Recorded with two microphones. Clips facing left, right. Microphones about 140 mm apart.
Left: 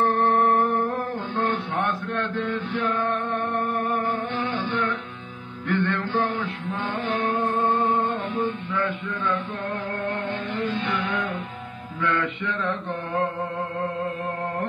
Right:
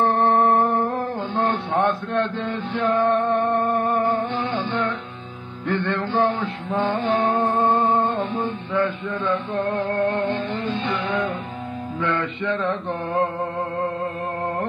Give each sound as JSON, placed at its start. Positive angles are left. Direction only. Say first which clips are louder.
{"t": 0.0, "sound": "music", "louder": "right 2 dB", "side_deg": -25}
{"t": 5.7, "sound": "mantra", "louder": "right 1 dB", "side_deg": -25}
{"t": 8.7, "sound": "a sound", "louder": "right 4 dB", "side_deg": -25}
{"t": 10.1, "sound": "music", "louder": "right 5 dB", "side_deg": -25}